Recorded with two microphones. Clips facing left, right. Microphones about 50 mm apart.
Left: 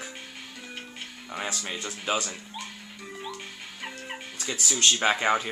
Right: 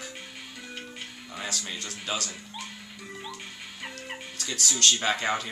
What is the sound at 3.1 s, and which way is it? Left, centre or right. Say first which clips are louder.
Music: left 2 dB; centre.